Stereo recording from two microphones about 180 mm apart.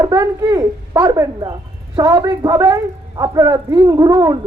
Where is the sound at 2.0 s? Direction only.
20° right (ahead or behind).